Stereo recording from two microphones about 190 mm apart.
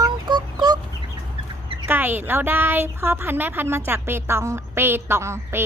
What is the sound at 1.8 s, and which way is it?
A woman's voice, 10° right (ahead or behind).